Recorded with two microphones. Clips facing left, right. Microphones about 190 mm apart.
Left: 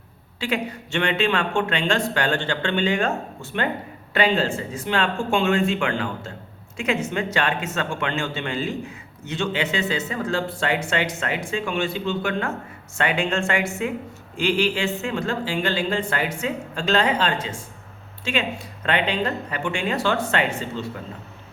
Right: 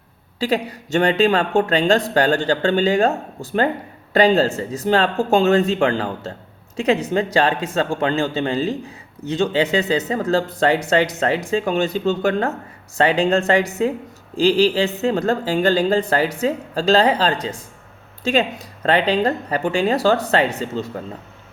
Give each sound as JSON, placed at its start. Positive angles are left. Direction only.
{"t": 0.3, "sound": "speech", "side_deg": -35}